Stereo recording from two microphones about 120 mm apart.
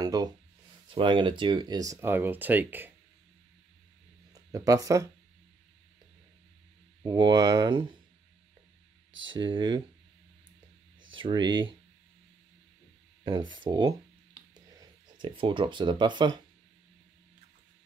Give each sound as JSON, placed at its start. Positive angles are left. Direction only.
{"t": 0.0, "sound": "a sound", "side_deg": -30}
{"t": 0.8, "sound": "speech", "side_deg": -45}
{"t": 4.3, "sound": "speech", "side_deg": -30}
{"t": 7.1, "sound": "speech", "side_deg": -35}
{"t": 9.4, "sound": "speech", "side_deg": -40}
{"t": 11.1, "sound": "speech", "side_deg": -40}
{"t": 13.2, "sound": "speech", "side_deg": -40}